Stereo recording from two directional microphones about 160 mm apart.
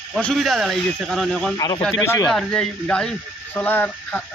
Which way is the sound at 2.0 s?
15° left (ahead or behind).